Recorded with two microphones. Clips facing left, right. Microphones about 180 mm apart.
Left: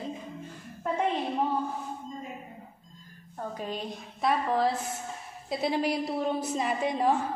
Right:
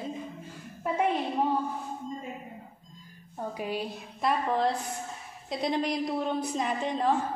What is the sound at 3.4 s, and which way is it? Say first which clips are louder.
A woman's voice: right 2 dB; 10° right (ahead or behind).